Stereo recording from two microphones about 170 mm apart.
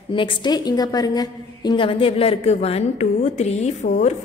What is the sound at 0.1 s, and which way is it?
A woman's voice, 30° left (ahead or behind).